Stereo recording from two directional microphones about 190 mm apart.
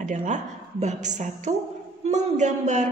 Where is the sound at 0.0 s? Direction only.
40° right (ahead or behind).